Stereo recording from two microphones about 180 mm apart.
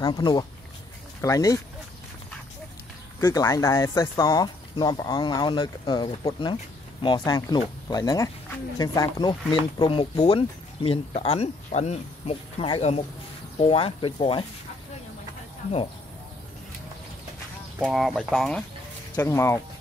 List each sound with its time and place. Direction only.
0.0 s speech: 25° left (ahead or behind)
3.2 s speech: 15° left (ahead or behind)
17.7 s speech: 5° right (ahead or behind)
19.1 s speech: 15° left (ahead or behind)